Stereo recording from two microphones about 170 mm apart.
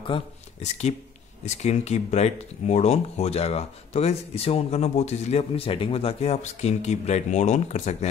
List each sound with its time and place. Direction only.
0.0 s speech: 35° left (ahead or behind)